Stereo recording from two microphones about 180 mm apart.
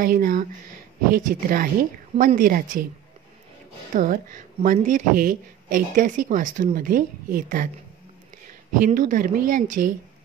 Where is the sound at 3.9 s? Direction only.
50° right (ahead or behind).